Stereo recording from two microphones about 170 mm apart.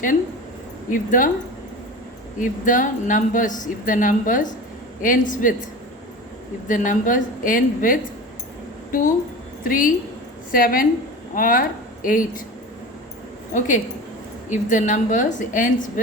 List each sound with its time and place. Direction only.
0.9 s speech: 50° left (ahead or behind)
2.4 s speech: 50° left (ahead or behind)
6.7 s speech: 50° left (ahead or behind)
9.6 s a woman's voice: 55° left (ahead or behind)
13.5 s speech: 50° left (ahead or behind)